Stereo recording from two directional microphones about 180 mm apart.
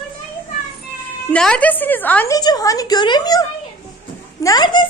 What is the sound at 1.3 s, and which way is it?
A woman's voice, 5° left (ahead or behind).